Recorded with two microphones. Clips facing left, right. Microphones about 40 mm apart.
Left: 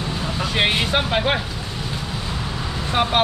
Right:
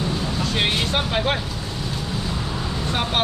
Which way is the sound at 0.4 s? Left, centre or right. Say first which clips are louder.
Left 4 dB; centre.